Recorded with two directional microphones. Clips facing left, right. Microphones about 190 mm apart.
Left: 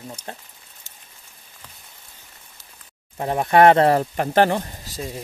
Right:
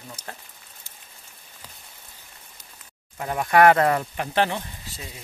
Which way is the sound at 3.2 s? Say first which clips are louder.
Left 3 dB; 30° left (ahead or behind).